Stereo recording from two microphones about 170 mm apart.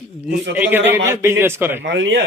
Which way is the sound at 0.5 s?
10° right (ahead or behind).